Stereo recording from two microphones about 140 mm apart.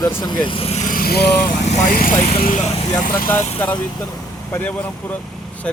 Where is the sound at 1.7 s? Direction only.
80° left.